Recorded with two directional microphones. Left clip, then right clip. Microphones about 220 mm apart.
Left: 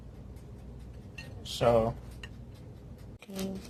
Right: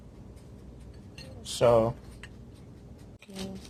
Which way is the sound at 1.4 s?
25° right (ahead or behind).